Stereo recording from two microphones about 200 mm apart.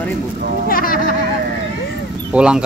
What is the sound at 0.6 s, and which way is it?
Speech, 45° left (ahead or behind).